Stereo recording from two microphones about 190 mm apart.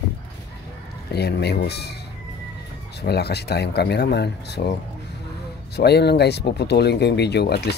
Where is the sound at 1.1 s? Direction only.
60° left (ahead or behind).